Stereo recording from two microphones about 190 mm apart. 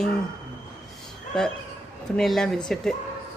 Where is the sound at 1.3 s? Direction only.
5° left (ahead or behind).